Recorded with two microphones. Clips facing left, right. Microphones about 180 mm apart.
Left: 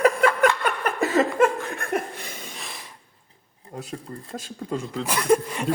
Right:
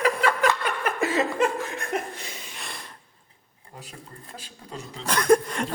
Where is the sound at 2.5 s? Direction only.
Centre (ahead or behind).